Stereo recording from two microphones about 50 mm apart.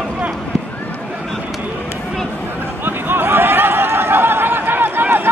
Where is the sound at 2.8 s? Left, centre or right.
Right.